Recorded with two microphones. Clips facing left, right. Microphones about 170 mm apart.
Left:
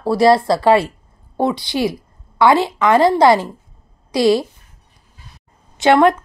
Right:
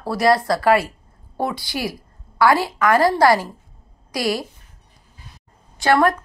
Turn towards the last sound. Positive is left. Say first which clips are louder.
# left 5 dB
turn(degrees=20)  # may be behind; listen again after turning